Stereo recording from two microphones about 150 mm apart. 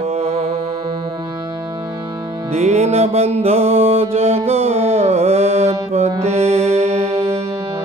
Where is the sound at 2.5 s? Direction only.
45° right (ahead or behind).